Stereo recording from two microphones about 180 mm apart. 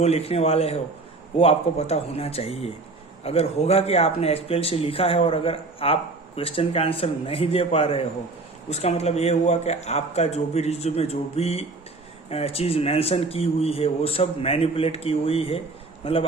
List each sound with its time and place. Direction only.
0.0 s speech: 35° left (ahead or behind)